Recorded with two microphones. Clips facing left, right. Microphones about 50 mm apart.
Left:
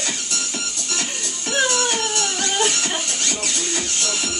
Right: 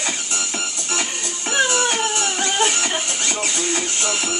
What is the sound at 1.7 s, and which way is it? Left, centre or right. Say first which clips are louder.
Music: right 2 dB; right.